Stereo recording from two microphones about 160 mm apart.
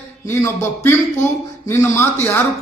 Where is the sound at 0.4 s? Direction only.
15° left (ahead or behind).